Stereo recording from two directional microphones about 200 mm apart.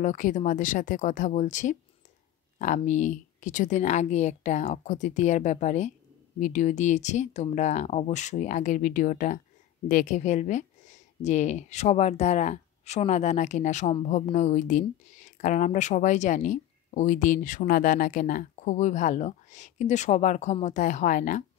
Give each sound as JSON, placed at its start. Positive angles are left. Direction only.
{"t": 0.0, "sound": "speech", "side_deg": 40}